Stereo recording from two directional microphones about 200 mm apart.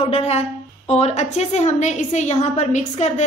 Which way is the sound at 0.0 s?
30° left (ahead or behind).